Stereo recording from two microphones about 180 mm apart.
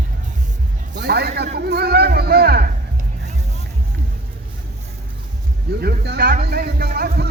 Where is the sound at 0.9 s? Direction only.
65° right (ahead or behind).